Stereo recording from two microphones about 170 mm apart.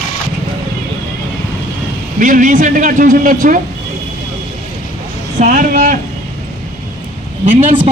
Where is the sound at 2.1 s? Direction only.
50° right (ahead or behind).